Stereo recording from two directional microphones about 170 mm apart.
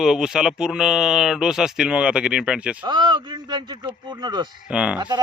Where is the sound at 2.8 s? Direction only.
25° right (ahead or behind).